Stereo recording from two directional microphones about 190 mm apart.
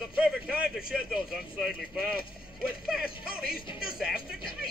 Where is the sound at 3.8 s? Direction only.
5° right (ahead or behind).